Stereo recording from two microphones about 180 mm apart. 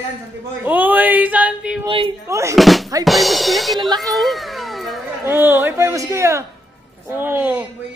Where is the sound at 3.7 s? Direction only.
25° right (ahead or behind).